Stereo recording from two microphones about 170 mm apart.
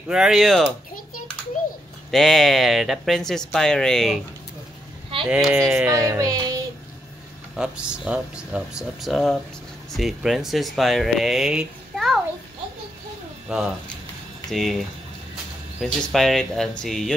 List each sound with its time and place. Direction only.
0.1 s speech: 5° right (ahead or behind)
2.0 s speech: centre (ahead or behind)
5.3 s speech: 5° right (ahead or behind)
5.9 s speech: 20° right (ahead or behind)
7.5 s speech: 5° right (ahead or behind)
13.5 s speech: 5° right (ahead or behind)